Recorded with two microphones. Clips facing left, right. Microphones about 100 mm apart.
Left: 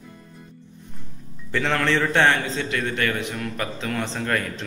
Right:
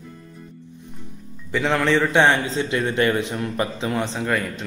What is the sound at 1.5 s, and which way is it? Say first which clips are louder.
Speech: right 3 dB; 10° right (ahead or behind).